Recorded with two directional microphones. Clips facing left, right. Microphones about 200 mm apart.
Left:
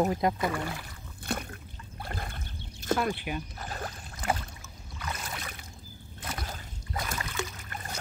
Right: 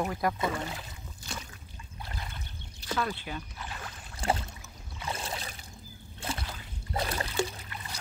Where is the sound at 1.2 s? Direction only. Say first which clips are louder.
Left 9 dB; 55° left (ahead or behind).